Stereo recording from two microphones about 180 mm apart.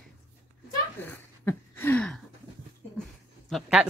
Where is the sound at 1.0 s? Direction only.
10° left (ahead or behind).